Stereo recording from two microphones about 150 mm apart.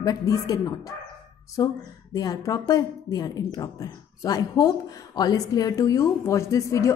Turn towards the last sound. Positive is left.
turn(degrees=20)  # may be behind; listen again after turning